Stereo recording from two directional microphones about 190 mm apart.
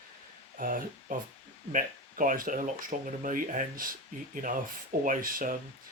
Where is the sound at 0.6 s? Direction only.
45° right (ahead or behind).